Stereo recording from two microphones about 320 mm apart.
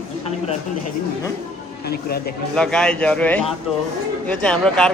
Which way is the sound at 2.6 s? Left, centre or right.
Centre.